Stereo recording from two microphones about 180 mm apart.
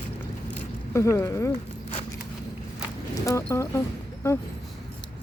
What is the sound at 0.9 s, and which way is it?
Speech, 15° left (ahead or behind).